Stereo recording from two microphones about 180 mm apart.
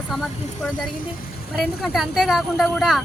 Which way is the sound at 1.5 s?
Centre (ahead or behind).